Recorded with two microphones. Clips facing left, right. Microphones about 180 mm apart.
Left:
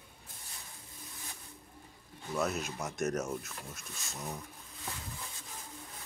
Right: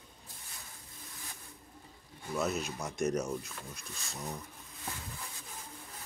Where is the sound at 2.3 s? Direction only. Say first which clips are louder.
Even; centre (ahead or behind).